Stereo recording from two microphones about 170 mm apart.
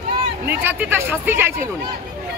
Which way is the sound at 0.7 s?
10° right (ahead or behind).